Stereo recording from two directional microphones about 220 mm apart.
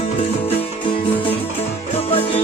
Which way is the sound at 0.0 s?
25° left (ahead or behind).